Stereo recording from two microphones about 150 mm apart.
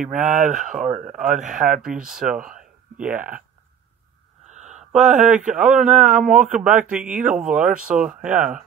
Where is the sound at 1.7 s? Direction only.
5° right (ahead or behind).